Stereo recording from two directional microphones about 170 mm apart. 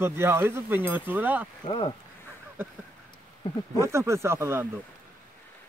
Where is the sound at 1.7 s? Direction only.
30° left (ahead or behind).